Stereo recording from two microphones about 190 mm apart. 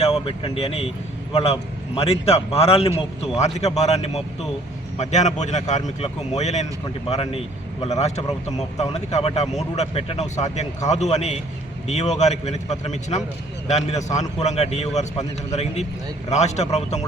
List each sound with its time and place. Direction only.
0.0 s speech: 30° left (ahead or behind)